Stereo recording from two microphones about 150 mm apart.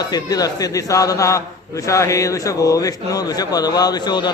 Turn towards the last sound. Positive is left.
turn(degrees=30)  # may be behind; listen again after turning